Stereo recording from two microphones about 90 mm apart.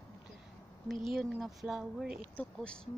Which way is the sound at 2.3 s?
10° left (ahead or behind).